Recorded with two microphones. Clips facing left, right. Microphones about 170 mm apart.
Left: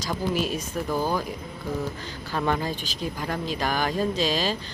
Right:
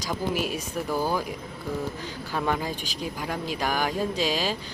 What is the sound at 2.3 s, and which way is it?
Speech, 10° right (ahead or behind).